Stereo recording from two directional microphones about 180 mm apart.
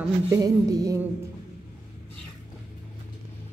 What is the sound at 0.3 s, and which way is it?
Music, 20° right (ahead or behind).